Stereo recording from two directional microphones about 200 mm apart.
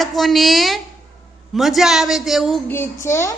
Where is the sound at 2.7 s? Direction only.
10° left (ahead or behind).